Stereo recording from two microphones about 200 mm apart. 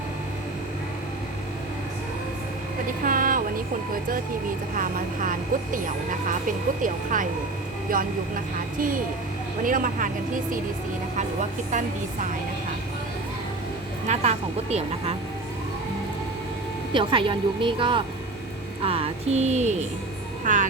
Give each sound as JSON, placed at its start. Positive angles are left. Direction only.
{"t": 3.0, "sound": "speech", "side_deg": -45}
{"t": 4.7, "sound": "speech", "side_deg": -40}
{"t": 9.6, "sound": "speech", "side_deg": -40}
{"t": 11.2, "sound": "speech", "side_deg": -35}
{"t": 14.1, "sound": "speech", "side_deg": -30}
{"t": 16.9, "sound": "a woman's voice", "side_deg": -25}